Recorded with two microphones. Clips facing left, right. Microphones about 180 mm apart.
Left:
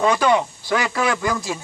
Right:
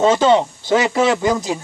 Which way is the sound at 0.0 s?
20° right (ahead or behind).